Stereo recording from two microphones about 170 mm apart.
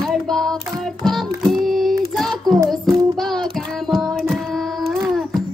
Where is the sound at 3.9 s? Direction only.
Centre (ahead or behind).